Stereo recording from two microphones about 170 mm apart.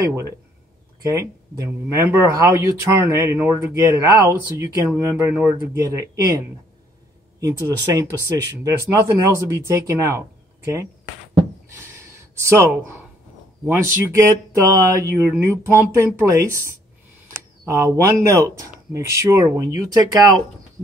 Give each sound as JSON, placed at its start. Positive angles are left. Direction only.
{"t": 0.0, "sound": "speech", "side_deg": -15}
{"t": 11.7, "sound": "a sound", "side_deg": -15}
{"t": 13.7, "sound": "speech", "side_deg": -15}